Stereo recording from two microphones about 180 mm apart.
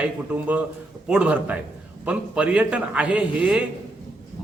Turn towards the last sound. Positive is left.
turn(degrees=-5)  # may be behind; listen again after turning